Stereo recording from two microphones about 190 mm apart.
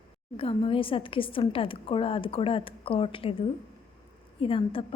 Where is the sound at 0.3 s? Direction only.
30° left (ahead or behind).